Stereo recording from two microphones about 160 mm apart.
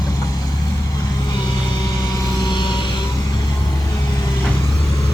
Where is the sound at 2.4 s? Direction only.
30° left (ahead or behind).